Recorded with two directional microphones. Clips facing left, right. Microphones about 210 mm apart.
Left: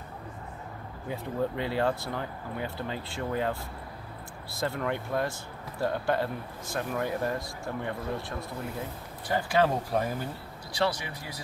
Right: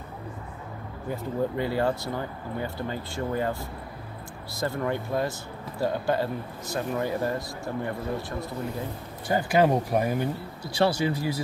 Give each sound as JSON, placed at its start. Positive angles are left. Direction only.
{"t": 1.1, "sound": "speech", "side_deg": 0}
{"t": 4.8, "sound": "speech", "side_deg": -5}
{"t": 9.3, "sound": "speech", "side_deg": -15}
{"t": 10.7, "sound": "speech", "side_deg": -30}